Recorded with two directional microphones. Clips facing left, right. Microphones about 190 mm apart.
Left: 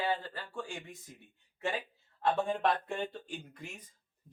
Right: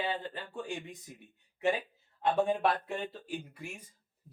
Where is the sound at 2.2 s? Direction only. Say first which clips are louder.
Right 2 dB; 10° right (ahead or behind).